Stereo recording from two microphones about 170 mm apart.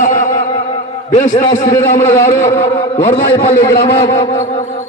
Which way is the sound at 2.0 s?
15° left (ahead or behind).